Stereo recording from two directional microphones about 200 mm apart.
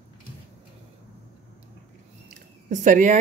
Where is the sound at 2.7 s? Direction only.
40° right (ahead or behind).